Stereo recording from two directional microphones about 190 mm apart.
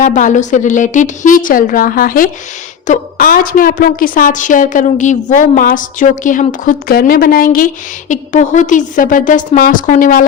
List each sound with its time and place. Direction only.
0.0 s a woman's voice: 40° left (ahead or behind)